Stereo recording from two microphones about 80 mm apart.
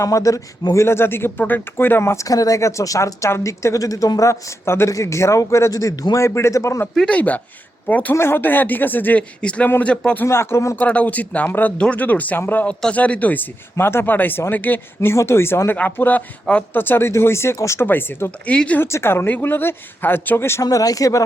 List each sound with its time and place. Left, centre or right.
0.0 s speech: left
6.1 s speech: left
6.9 s speech: centre
7.2 s speech: centre
8.1 s speech: left; by 9.6 s centre
9.6 s speech: left
9.9 s speech: centre
10.2 s speech: left
10.8 s speech: centre
15.1 s speech: left
18.5 s speech: centre
18.8 s speech: left
20.7 s speech: left